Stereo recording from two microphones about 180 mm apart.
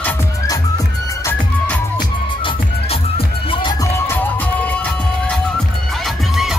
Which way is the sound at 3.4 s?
25° left (ahead or behind).